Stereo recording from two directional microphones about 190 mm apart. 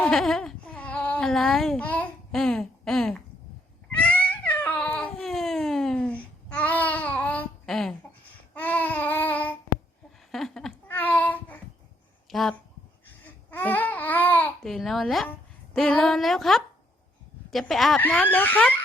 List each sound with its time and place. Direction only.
0.0 s speech: centre (ahead or behind)
3.9 s cat: 5° left (ahead or behind)
8.5 s babbling: 10° left (ahead or behind)
10.3 s a sound: centre (ahead or behind)
12.3 s speech: centre (ahead or behind)
13.5 s babbling: 10° left (ahead or behind)
15.7 s speech: 5° left (ahead or behind)